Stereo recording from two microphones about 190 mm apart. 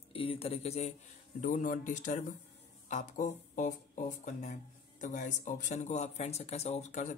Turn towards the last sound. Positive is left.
turn(degrees=40)  # may be behind; listen again after turning